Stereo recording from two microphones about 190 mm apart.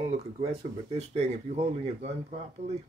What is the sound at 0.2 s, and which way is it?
Speech, 35° right (ahead or behind).